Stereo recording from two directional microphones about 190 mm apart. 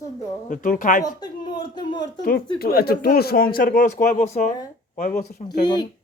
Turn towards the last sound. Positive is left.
turn(degrees=20)  # may be behind; listen again after turning